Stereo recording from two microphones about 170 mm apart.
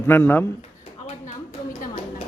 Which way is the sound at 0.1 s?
10° left (ahead or behind).